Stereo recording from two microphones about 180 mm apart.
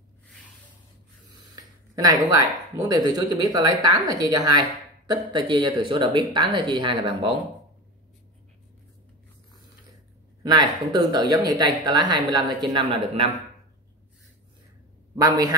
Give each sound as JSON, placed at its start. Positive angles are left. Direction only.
{"t": 1.3, "sound": "speech", "side_deg": -20}
{"t": 10.4, "sound": "a man's voice", "side_deg": -25}
{"t": 15.1, "sound": "speech", "side_deg": -20}